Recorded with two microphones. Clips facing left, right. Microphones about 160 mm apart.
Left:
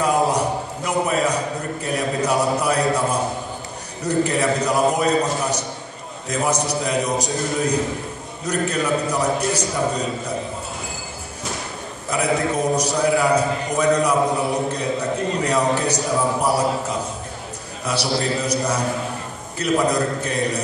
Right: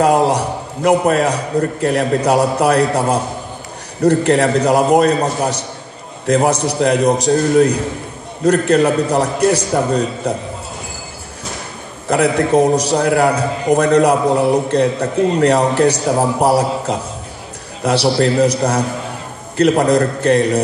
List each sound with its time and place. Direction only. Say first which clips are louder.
0.0 s a sound: right 6 dB; 65° right (ahead or behind)
0.8 s a man's voice: right 8 dB; 60° right (ahead or behind)
12.1 s a man's voice: right 7 dB; 65° right (ahead or behind)
19.5 s a man's voice: right 7 dB; 65° right (ahead or behind)